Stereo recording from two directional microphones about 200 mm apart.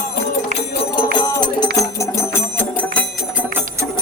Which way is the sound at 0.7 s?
25° left (ahead or behind).